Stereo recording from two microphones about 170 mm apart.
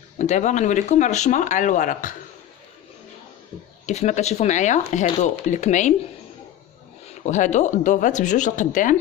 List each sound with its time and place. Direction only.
0.2 s speech: 45° left (ahead or behind)
3.8 s speech: 40° left (ahead or behind)
7.2 s speech: 45° left (ahead or behind)